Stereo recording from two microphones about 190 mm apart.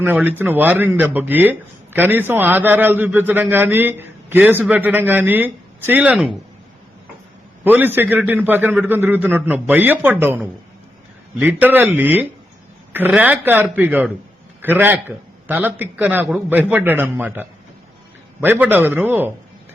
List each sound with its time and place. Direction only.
0.0 s speech: 10° right (ahead or behind)
7.6 s speech: 10° right (ahead or behind)